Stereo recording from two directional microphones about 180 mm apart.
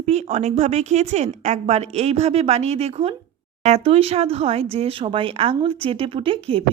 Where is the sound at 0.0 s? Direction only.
40° right (ahead or behind).